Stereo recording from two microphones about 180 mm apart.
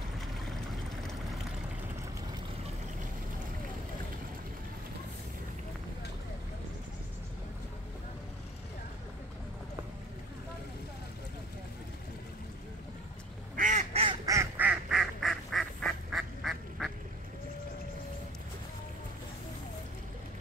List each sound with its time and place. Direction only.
13.6 s duck: 45° right (ahead or behind)
14.2 s duck: 15° right (ahead or behind)